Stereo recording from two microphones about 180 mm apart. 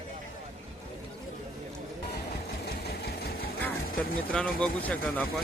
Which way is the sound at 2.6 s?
65° left (ahead or behind).